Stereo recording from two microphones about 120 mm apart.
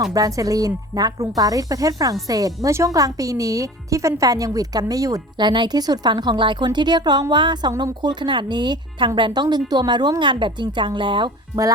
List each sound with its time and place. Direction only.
0.0 s a woman's voice: 30° right (ahead or behind)